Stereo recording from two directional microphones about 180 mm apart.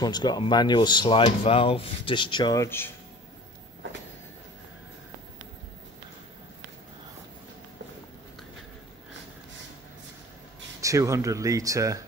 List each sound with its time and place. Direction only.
0.0 s speech: 25° left (ahead or behind)
10.8 s speech: 15° right (ahead or behind)